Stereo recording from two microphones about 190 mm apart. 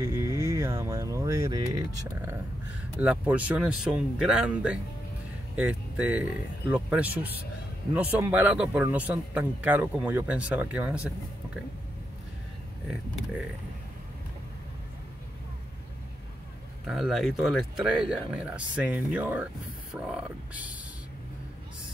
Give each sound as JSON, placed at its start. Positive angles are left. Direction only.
{"t": 0.0, "sound": "a man's voice", "side_deg": -15}
{"t": 16.8, "sound": "speech", "side_deg": 0}